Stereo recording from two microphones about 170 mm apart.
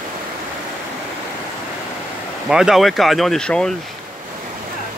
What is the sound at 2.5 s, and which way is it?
Speech, 5° right (ahead or behind).